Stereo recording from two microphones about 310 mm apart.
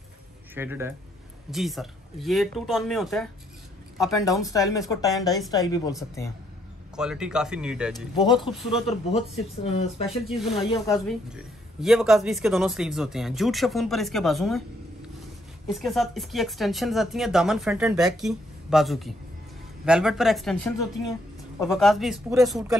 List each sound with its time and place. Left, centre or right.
0.6 s speech: centre
7.0 s speech: centre
9.7 s speech: centre
10.0 s speech: centre
10.7 s speech: centre
11.2 s speech: centre
15.6 s speech: centre